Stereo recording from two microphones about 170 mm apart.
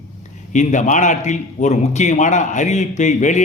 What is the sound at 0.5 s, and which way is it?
A man's voice, 45° left (ahead or behind).